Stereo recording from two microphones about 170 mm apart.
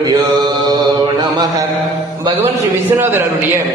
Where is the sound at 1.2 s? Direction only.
25° right (ahead or behind).